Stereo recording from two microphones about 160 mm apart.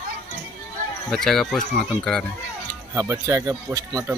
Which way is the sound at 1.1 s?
5° left (ahead or behind).